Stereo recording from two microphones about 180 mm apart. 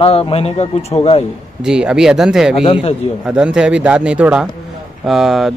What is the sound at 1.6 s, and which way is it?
Speech, 5° right (ahead or behind).